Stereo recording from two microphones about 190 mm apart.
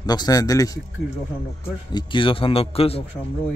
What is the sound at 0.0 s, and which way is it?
Speech, 20° left (ahead or behind).